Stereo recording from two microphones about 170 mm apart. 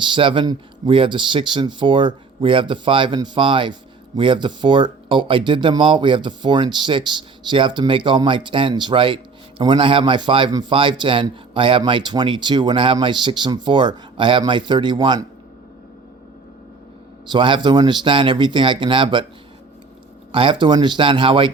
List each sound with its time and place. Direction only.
0.0 s speech: 30° right (ahead or behind)
17.2 s speech: 30° right (ahead or behind)
20.3 s speech: 30° right (ahead or behind)